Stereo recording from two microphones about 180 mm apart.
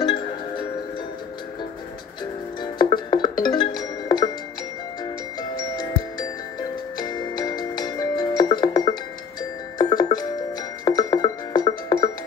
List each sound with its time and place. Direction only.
0.0 s music: 25° left (ahead or behind)
2.6 s music: 25° left (ahead or behind)
5.6 s glockenspiel: 20° left (ahead or behind)
7.0 s music: 20° left (ahead or behind)
9.4 s glockenspiel: 20° left (ahead or behind)
10.9 s music: 20° left (ahead or behind)